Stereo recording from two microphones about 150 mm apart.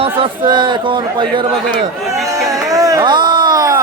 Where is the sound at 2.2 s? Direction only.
20° right (ahead or behind).